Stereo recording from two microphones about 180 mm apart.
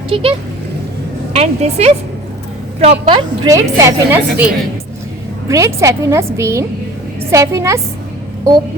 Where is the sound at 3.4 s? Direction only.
15° right (ahead or behind).